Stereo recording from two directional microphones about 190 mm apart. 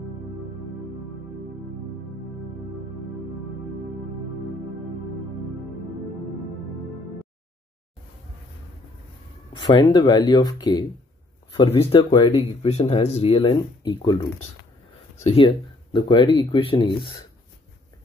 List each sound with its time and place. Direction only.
9.6 s a sound: 25° left (ahead or behind)
9.9 s speech: 20° left (ahead or behind)
12.6 s speech: 35° left (ahead or behind)
15.2 s speech: 25° left (ahead or behind)